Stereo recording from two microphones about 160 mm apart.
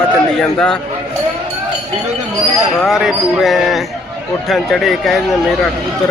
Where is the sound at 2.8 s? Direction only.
Centre (ahead or behind).